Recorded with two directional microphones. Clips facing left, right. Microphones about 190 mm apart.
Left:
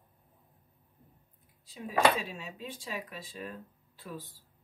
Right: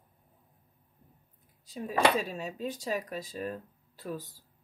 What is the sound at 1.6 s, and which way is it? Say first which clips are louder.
Speech: even; 40° right (ahead or behind).